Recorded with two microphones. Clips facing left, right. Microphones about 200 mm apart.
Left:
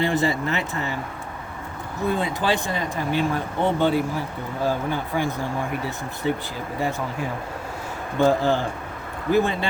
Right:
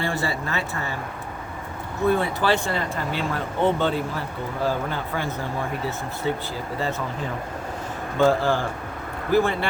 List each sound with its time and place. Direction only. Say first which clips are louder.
0.0 s speech: left 5 dB; 20° left (ahead or behind)
2.1 s speech: right 1 dB; 15° left (ahead or behind)
6.7 s speech: left 2 dB; 15° left (ahead or behind)